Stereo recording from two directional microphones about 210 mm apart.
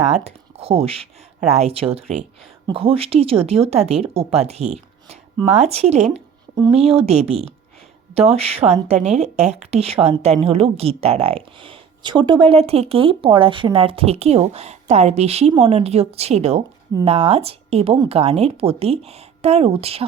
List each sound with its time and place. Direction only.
0.3 s speech: 30° right (ahead or behind)